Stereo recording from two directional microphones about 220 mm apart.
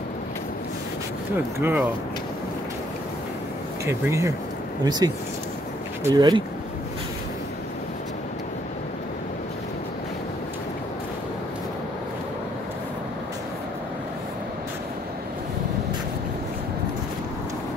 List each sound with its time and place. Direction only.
1.6 s speech: 10° right (ahead or behind)
3.8 s speech: 15° right (ahead or behind)